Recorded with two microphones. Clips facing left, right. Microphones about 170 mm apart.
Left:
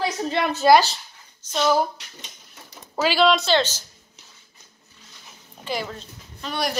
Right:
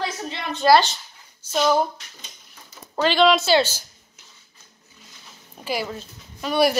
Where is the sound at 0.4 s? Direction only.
65° left (ahead or behind).